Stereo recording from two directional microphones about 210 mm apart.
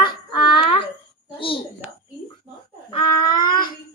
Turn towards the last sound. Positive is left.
turn(degrees=20)  # may be behind; listen again after turning